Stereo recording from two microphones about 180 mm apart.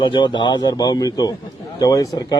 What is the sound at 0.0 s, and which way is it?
Speech, 25° left (ahead or behind).